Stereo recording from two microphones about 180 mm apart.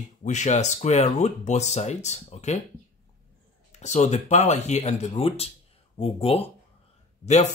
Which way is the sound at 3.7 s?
40° left (ahead or behind).